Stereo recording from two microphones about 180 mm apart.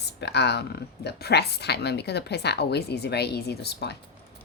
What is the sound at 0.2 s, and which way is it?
Speech, 65° left (ahead or behind).